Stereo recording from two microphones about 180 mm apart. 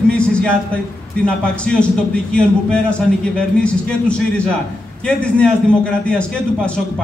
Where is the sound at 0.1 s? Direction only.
5° left (ahead or behind).